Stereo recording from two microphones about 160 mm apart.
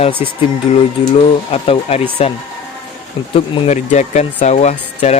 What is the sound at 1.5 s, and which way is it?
Speech, 40° left (ahead or behind).